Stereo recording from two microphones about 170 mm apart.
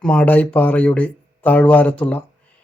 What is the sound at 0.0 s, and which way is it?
Speech, 5° left (ahead or behind).